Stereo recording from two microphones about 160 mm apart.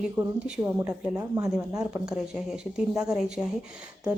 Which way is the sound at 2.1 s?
5° right (ahead or behind).